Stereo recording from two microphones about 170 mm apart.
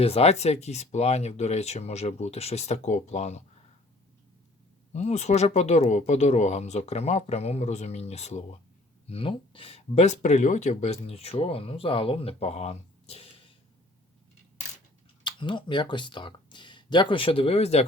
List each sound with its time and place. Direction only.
0.0 s speech: 35° left (ahead or behind)
4.9 s speech: 40° left (ahead or behind)
15.2 s speech: 25° left (ahead or behind)